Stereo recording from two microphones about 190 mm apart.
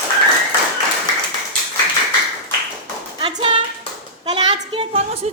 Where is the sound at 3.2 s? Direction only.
25° right (ahead or behind).